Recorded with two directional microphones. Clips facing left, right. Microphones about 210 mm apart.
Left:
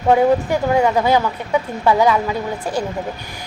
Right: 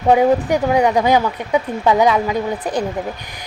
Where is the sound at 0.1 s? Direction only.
15° right (ahead or behind).